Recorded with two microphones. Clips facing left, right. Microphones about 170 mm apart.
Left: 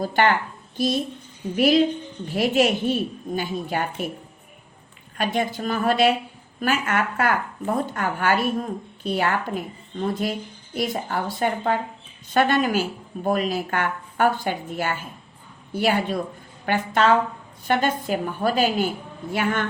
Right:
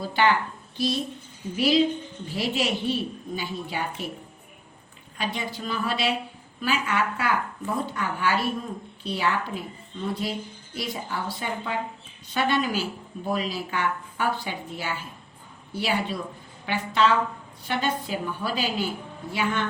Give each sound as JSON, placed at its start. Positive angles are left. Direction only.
{"t": 0.0, "sound": "speech", "side_deg": 50}
{"t": 5.1, "sound": "speech", "side_deg": 50}